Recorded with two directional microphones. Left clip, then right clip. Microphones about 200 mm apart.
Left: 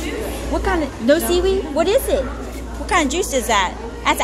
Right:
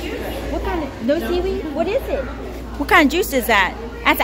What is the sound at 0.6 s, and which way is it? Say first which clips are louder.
A woman's voice: left 5 dB; 10° left (ahead or behind).